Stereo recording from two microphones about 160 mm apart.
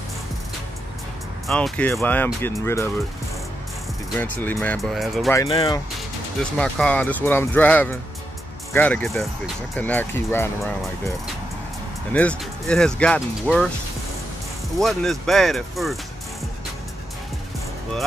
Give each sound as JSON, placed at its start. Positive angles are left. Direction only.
{"t": 1.5, "sound": "speech", "side_deg": 5}
{"t": 4.2, "sound": "speech", "side_deg": 10}
{"t": 4.7, "sound": "speech", "side_deg": 0}
{"t": 5.5, "sound": "speech", "side_deg": 35}
{"t": 6.6, "sound": "speech", "side_deg": 10}
{"t": 12.1, "sound": "speech", "side_deg": 10}
{"t": 14.8, "sound": "speech", "side_deg": 0}